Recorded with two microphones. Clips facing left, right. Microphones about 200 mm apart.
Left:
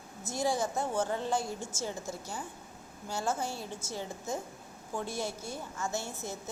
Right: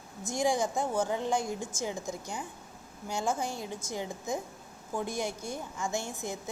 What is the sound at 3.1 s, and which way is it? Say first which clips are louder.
A woman's voice: right 2 dB; 15° right (ahead or behind).